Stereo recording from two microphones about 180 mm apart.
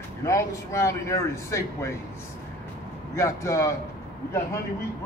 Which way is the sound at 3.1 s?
15° left (ahead or behind).